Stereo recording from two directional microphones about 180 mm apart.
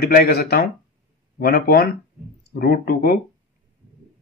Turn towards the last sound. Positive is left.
turn(degrees=60)  # may be behind; listen again after turning